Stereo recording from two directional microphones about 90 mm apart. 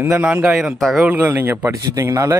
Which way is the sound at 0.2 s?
15° right (ahead or behind).